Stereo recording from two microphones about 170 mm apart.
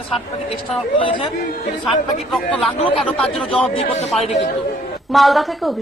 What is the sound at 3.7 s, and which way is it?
Speech, 40° left (ahead or behind).